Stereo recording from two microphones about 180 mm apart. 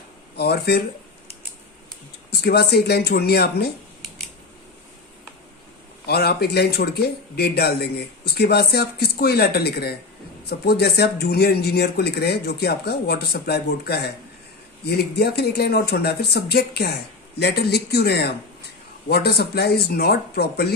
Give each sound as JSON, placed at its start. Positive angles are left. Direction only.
{"t": 0.3, "sound": "speech", "side_deg": 65}
{"t": 2.3, "sound": "speech", "side_deg": 60}
{"t": 6.1, "sound": "speech", "side_deg": 60}